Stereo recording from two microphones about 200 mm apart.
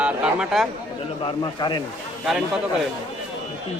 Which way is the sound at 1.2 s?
20° left (ahead or behind).